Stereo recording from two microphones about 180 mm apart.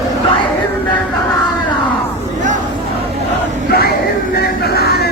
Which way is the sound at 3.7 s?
55° left (ahead or behind).